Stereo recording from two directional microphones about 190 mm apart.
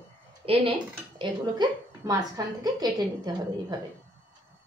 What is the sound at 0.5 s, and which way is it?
Speech, 25° right (ahead or behind).